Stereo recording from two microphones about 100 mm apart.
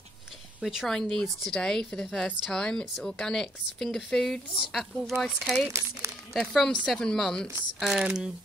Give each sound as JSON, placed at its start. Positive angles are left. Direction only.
{"t": 0.6, "sound": "speech", "side_deg": 0}
{"t": 5.7, "sound": "speech", "side_deg": -30}
{"t": 6.4, "sound": "speech", "side_deg": 5}
{"t": 7.8, "sound": "speech", "side_deg": -5}